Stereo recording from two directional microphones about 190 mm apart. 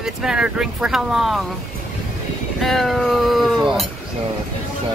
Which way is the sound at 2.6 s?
Centre (ahead or behind).